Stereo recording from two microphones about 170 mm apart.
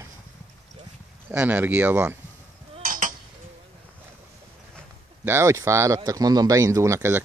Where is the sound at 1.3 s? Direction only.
10° right (ahead or behind).